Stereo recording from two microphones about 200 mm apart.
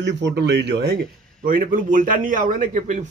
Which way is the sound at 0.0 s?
60° right (ahead or behind).